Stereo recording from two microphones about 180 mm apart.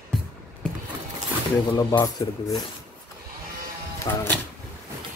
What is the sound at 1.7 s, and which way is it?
Speech, 20° left (ahead or behind).